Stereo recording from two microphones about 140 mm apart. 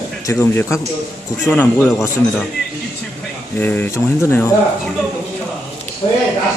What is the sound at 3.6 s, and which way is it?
Speech, 10° left (ahead or behind).